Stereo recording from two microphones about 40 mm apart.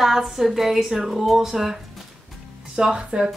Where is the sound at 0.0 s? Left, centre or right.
Centre.